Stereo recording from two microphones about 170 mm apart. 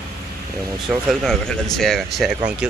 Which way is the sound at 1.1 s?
Centre (ahead or behind).